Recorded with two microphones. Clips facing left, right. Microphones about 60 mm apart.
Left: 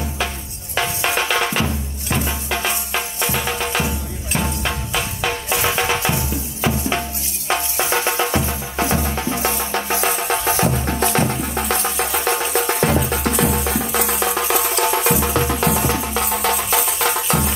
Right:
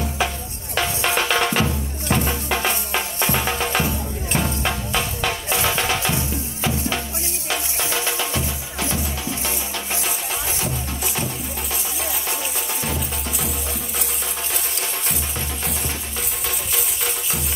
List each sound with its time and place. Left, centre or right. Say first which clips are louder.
0.7 s music: left 1 dB; centre
5.5 s music: left 3 dB; centre
7.4 s music: left 6 dB; left
10.0 s music: left 8 dB; left